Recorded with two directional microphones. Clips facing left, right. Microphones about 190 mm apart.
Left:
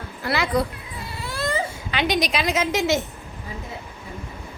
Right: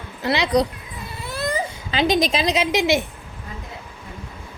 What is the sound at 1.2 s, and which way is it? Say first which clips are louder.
Baby cry: right 1 dB; 20° right (ahead or behind).